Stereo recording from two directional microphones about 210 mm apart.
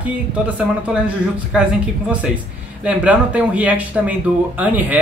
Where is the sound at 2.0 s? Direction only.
5° right (ahead or behind).